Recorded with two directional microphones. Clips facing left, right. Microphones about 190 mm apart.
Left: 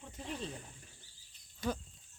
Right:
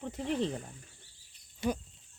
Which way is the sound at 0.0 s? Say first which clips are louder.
Right 10 dB; 80° right.